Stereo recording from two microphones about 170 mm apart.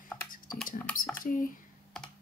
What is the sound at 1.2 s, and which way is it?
Speech, 55° left (ahead or behind).